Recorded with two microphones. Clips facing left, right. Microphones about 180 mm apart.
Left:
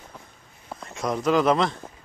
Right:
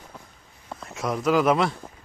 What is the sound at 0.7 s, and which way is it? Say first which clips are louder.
Speech: left 1 dB; centre (ahead or behind).